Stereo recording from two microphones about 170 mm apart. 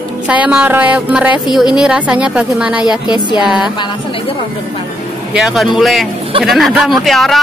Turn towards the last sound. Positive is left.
turn(degrees=0)  # may be behind; listen again after turning